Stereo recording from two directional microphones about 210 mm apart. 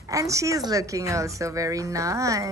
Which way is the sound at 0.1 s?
15° right (ahead or behind).